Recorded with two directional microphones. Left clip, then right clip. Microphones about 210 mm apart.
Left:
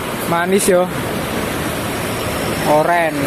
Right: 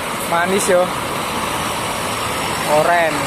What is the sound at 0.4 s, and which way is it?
Speech, 20° left (ahead or behind).